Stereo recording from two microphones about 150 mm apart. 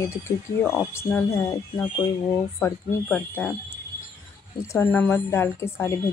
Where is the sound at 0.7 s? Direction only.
15° left (ahead or behind).